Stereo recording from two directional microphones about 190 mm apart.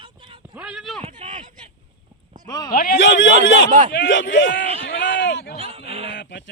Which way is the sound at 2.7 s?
50° left (ahead or behind).